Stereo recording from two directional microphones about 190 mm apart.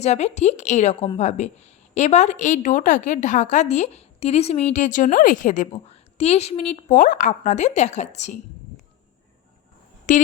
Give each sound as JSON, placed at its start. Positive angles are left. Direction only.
{"t": 0.0, "sound": "a woman's voice", "side_deg": 35}
{"t": 10.1, "sound": "a woman's voice", "side_deg": 40}